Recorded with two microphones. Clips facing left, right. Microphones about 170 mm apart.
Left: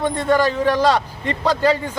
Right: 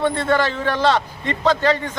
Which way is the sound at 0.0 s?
15° left (ahead or behind).